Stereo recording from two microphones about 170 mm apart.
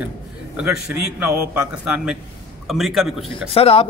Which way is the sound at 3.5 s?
35° left (ahead or behind).